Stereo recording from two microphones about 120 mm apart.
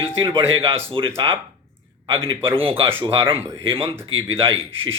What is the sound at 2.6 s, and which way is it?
A man's voice, 50° right (ahead or behind).